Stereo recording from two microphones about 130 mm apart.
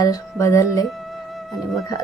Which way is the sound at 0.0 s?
25° left (ahead or behind).